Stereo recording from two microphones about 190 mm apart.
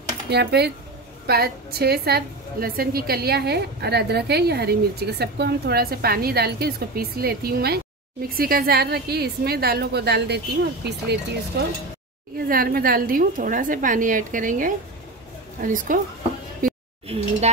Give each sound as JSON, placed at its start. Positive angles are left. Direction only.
{"t": 0.3, "sound": "a woman's voice", "side_deg": -60}
{"t": 12.4, "sound": "a woman's voice", "side_deg": -50}
{"t": 16.6, "sound": "a sound", "side_deg": -45}